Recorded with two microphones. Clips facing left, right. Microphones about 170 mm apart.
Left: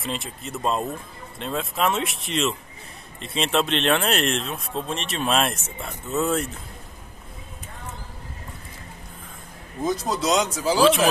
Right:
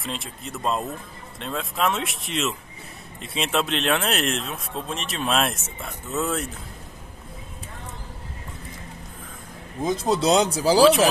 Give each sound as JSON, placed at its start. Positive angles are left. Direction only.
{"t": 0.0, "sound": "speech", "side_deg": 0}
{"t": 9.8, "sound": "speech", "side_deg": -25}